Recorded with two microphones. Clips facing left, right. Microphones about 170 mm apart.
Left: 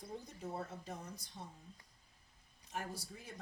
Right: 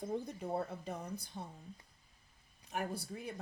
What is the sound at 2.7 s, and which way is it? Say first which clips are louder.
Speech: right 5 dB; 60° right (ahead or behind).